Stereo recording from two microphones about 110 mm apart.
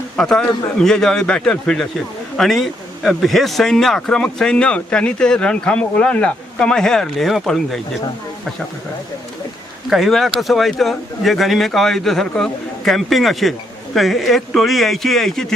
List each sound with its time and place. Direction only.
0.2 s a man's voice: 5° left (ahead or behind)
9.9 s a man's voice: centre (ahead or behind)